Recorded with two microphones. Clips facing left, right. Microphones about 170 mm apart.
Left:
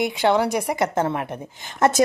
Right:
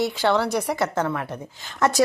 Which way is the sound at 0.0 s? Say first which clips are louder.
Left 2 dB; 15° left (ahead or behind).